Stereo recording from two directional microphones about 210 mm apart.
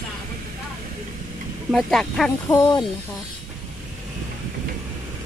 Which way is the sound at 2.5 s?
15° left (ahead or behind).